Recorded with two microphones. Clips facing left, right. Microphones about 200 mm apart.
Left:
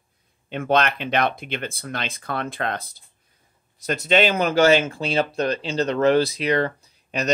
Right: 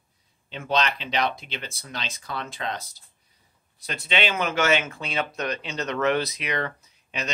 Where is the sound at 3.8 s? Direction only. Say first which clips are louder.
Left 8 dB; 45° left (ahead or behind).